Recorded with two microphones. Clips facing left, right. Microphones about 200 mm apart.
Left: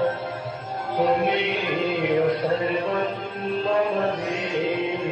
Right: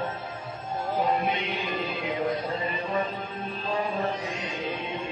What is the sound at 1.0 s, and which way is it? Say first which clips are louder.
Chant: left 7 dB; 75° left (ahead or behind).